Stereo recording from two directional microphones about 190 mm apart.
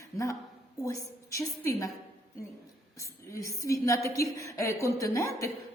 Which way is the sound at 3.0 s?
15° left (ahead or behind).